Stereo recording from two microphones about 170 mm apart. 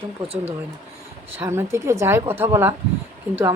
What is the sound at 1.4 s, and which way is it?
Speech, 15° right (ahead or behind).